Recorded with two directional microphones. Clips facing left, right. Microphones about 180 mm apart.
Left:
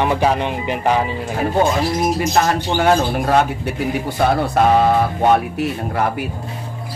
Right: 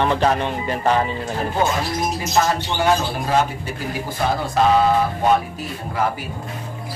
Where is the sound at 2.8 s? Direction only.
55° left (ahead or behind).